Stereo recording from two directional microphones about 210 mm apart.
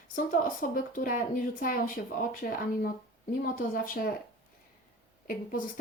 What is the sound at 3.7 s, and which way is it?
Speech, 45° left (ahead or behind).